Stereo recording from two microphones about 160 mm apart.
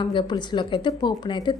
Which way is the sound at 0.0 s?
30° left (ahead or behind).